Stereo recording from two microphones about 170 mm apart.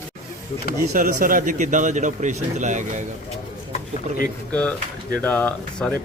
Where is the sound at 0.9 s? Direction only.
55° right (ahead or behind).